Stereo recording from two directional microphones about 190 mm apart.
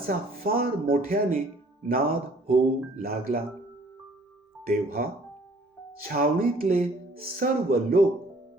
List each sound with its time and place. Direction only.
0.4 s speech: 50° right (ahead or behind)
4.6 s speech: 50° right (ahead or behind)